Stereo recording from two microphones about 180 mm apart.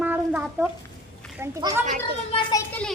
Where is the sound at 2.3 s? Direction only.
30° left (ahead or behind).